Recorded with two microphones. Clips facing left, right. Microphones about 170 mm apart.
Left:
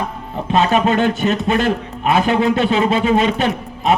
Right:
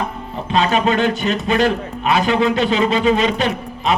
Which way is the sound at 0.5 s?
50° left (ahead or behind).